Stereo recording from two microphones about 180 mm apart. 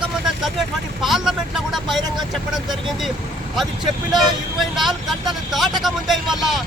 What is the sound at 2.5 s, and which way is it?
Speech, centre (ahead or behind).